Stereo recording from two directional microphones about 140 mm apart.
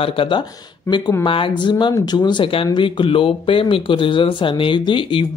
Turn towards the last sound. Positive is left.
turn(degrees=40)  # may be behind; listen again after turning